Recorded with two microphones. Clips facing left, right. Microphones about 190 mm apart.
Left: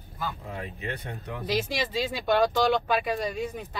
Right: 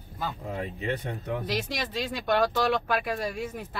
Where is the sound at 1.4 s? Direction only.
Centre (ahead or behind).